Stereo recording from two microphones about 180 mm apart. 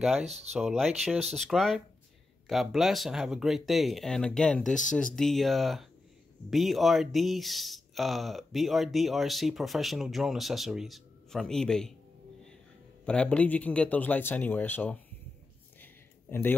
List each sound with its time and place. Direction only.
0.2 s speech: 40° right (ahead or behind)
0.5 s speech: centre (ahead or behind)
13.0 s a man's voice: 5° left (ahead or behind)
15.8 s a sound: 10° left (ahead or behind)